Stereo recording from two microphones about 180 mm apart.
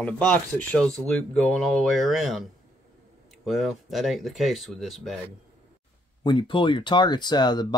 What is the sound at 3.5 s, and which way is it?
Speech, centre (ahead or behind).